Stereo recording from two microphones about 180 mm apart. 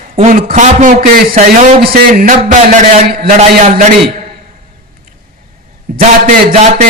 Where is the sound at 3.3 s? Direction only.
40° right (ahead or behind).